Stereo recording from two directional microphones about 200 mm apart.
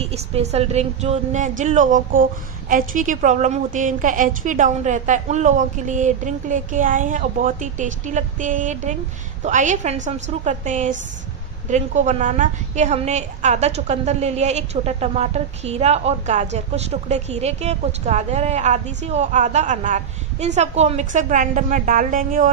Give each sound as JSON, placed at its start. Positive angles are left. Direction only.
{"t": 0.0, "sound": "a woman's voice", "side_deg": -30}